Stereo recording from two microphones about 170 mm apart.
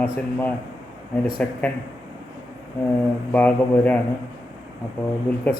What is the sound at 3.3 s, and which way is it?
Speech, 10° left (ahead or behind).